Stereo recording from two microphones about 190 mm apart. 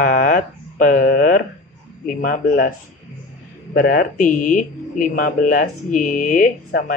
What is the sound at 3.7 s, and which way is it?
Speech, 50° left (ahead or behind).